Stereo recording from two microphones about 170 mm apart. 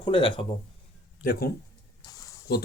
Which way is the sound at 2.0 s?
20° left (ahead or behind).